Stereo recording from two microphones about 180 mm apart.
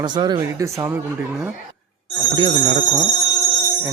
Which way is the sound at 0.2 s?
25° right (ahead or behind).